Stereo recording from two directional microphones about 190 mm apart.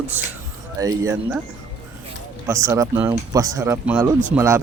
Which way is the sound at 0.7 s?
15° right (ahead or behind).